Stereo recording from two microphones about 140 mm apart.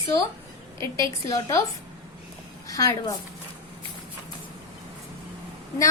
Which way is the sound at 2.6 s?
25° left (ahead or behind).